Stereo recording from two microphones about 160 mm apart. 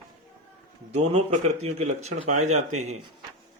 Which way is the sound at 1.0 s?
40° right (ahead or behind).